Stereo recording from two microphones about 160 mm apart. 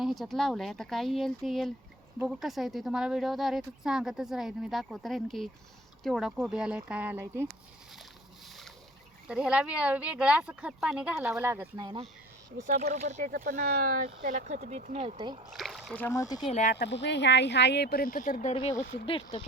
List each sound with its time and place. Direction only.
0.0 s speech: centre (ahead or behind)
9.2 s speech: 5° right (ahead or behind)
11.8 s speech: 30° right (ahead or behind)
12.8 s speech: 45° right (ahead or behind)
15.5 s speech: centre (ahead or behind)
16.1 s speech: 20° left (ahead or behind)
16.5 s speech: 45° left (ahead or behind)
16.7 s speech: 90° left; by 18.5 s 55° left (ahead or behind)
19.0 s speech: 35° left (ahead or behind)